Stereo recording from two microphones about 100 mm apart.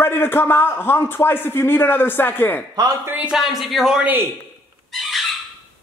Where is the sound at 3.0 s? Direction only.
15° right (ahead or behind).